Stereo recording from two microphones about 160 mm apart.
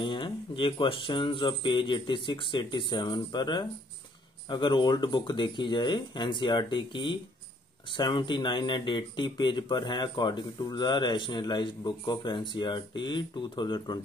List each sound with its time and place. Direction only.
0.0 s speech: 30° left (ahead or behind)